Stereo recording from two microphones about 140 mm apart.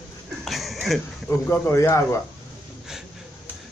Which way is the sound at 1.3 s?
15° left (ahead or behind).